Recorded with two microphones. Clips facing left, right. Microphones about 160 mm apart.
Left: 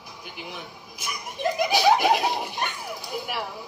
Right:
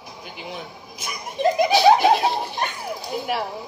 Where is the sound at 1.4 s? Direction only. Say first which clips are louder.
Right 5 dB; 25° right (ahead or behind).